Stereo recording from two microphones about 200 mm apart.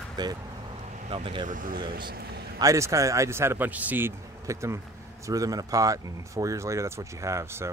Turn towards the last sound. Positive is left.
turn(degrees=-15)  # may be behind; listen again after turning